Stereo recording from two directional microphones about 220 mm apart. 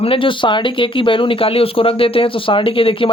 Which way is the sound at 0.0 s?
25° left (ahead or behind).